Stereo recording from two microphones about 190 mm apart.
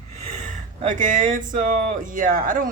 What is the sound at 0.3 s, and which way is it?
Speech, 40° right (ahead or behind).